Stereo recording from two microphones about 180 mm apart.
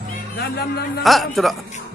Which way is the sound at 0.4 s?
60° left (ahead or behind).